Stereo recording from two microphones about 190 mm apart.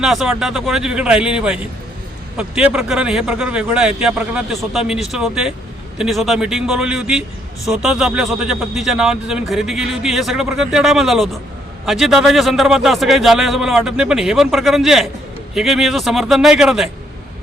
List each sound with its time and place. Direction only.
0.0 s a man's voice: centre (ahead or behind)